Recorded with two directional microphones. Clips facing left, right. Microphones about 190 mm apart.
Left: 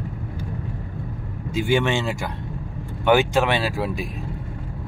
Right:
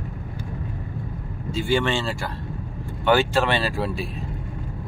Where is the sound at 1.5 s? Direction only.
15° left (ahead or behind).